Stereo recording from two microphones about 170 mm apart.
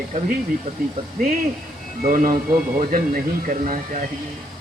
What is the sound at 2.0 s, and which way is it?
Speech, 55° right (ahead or behind).